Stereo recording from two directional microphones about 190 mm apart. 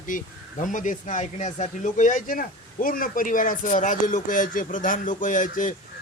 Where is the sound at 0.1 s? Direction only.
45° left (ahead or behind).